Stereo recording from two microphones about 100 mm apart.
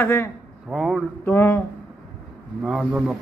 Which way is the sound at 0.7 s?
Centre (ahead or behind).